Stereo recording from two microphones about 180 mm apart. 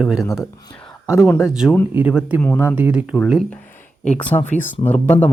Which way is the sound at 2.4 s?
10° left (ahead or behind).